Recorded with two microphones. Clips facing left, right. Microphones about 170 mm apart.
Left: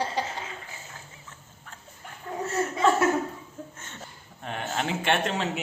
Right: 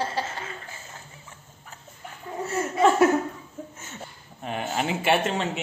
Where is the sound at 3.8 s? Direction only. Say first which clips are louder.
Right 3 dB; 5° right (ahead or behind).